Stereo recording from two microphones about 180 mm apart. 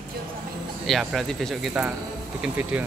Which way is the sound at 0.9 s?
Centre (ahead or behind).